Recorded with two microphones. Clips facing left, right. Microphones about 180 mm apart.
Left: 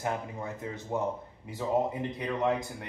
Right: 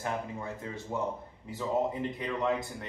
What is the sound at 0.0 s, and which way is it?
Speech, 20° left (ahead or behind).